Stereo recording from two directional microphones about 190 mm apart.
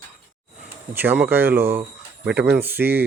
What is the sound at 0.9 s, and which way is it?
Speech, 10° right (ahead or behind).